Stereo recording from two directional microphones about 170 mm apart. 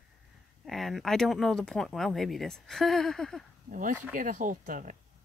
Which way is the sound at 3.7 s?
50° right (ahead or behind).